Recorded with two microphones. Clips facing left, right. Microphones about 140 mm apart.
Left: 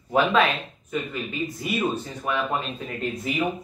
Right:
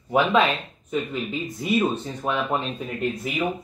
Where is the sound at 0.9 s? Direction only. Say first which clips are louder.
Right 3 dB; 25° right (ahead or behind).